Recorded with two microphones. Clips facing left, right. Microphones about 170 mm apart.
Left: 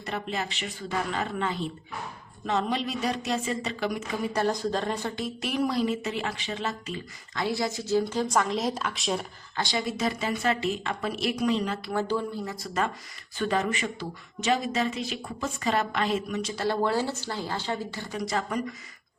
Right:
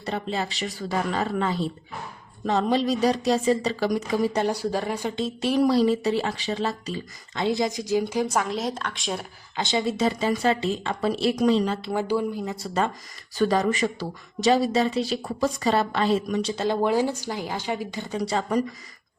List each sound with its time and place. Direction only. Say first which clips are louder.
0.0 s speech: right 4 dB; 30° right (ahead or behind)
4.4 s a woman's voice: right 2 dB; 10° right (ahead or behind)
5.1 s speech: right 6 dB; 25° right (ahead or behind)
7.3 s a woman's voice: right 4 dB; 20° right (ahead or behind); by 9.2 s centre (ahead or behind)
9.6 s speech: right 5 dB; 25° right (ahead or behind)
12.5 s speech: right 3 dB; 30° right (ahead or behind)
16.6 s a woman's voice: right 3 dB; 15° right (ahead or behind)